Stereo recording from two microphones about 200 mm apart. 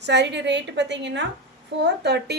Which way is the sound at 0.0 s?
60° right (ahead or behind).